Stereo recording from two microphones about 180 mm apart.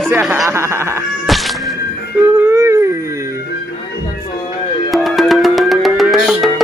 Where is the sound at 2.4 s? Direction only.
15° right (ahead or behind).